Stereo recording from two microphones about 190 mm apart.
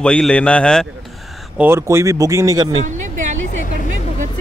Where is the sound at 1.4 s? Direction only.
10° right (ahead or behind).